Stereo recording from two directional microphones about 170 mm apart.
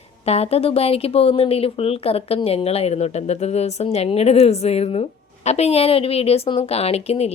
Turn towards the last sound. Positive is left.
turn(degrees=40)  # may be behind; listen again after turning